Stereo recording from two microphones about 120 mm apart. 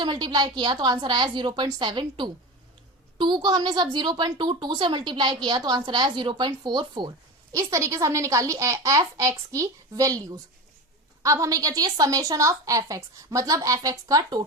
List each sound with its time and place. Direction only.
0.0 s a woman's voice: 40° right (ahead or behind)
7.5 s a woman's voice: 25° right (ahead or behind)